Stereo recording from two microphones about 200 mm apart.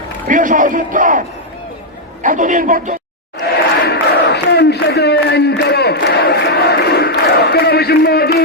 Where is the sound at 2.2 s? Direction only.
40° right (ahead or behind).